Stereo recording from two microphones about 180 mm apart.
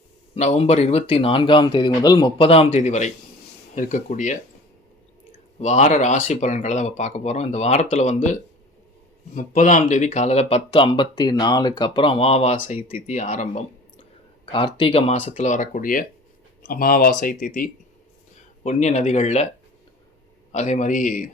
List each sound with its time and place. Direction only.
0.3 s speech: 40° left (ahead or behind)
5.5 s speech: 40° left (ahead or behind)
18.6 s speech: 40° left (ahead or behind)
20.5 s speech: 40° left (ahead or behind)